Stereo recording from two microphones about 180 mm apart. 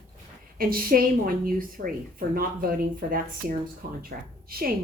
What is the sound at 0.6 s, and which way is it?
A woman's voice, 55° right (ahead or behind).